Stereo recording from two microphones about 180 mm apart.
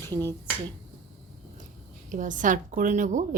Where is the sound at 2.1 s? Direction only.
45° right (ahead or behind).